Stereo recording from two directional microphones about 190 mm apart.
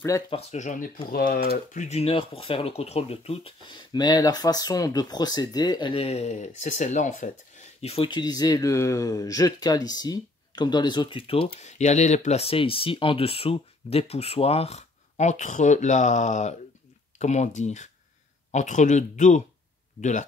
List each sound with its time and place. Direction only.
0.3 s speech: 35° left (ahead or behind)